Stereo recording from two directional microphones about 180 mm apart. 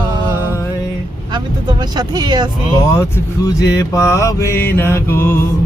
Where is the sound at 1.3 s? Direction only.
25° right (ahead or behind).